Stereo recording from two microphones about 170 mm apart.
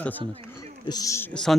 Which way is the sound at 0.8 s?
20° left (ahead or behind).